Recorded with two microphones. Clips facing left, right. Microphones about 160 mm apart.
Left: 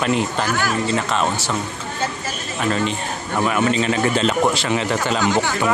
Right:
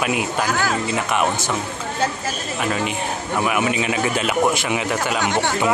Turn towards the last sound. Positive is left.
turn(degrees=-25)  # may be behind; listen again after turning